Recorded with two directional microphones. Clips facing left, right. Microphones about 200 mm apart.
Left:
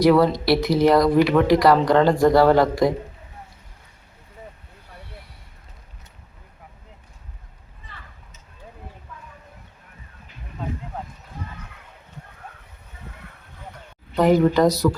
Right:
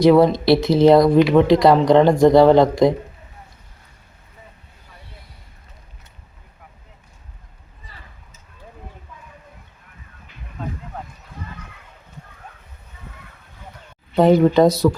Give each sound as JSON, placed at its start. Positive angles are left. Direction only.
{"t": 0.0, "sound": "speech", "side_deg": -25}
{"t": 14.2, "sound": "speech", "side_deg": -25}